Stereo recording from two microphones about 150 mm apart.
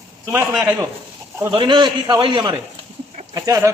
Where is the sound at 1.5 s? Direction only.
35° right (ahead or behind).